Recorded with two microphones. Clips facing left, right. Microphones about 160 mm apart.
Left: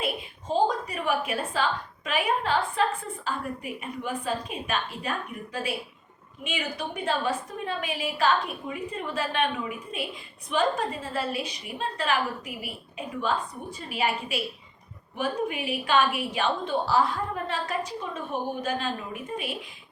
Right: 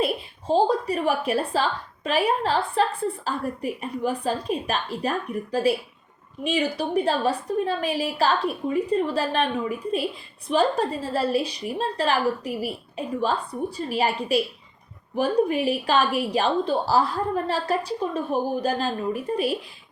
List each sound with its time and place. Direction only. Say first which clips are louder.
0.0 s a woman's voice: right 6 dB; 35° right (ahead or behind)